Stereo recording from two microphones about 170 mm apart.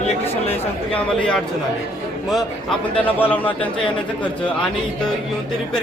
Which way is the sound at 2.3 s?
5° left (ahead or behind).